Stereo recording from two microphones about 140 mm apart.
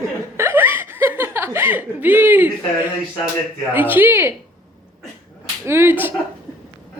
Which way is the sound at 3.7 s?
15° right (ahead or behind).